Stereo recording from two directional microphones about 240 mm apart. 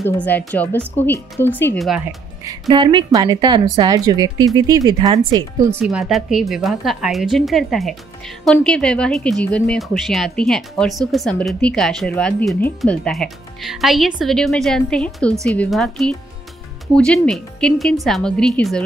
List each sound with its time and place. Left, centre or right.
0.0 s a woman's voice: centre
2.7 s a woman's voice: centre
5.9 s speech: centre